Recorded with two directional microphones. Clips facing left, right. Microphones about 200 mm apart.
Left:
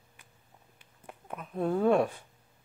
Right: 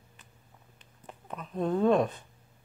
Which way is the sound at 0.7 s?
10° left (ahead or behind).